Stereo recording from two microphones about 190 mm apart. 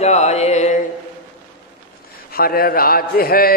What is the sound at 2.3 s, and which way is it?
Speech, 50° left (ahead or behind).